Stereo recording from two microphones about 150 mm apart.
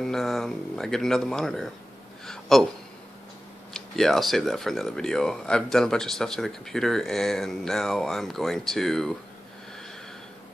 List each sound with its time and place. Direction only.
0.0 s speech: centre (ahead or behind)
3.7 s speech: 5° left (ahead or behind)